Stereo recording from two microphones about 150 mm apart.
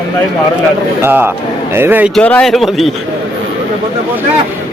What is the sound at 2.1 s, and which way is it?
Speech, 5° left (ahead or behind).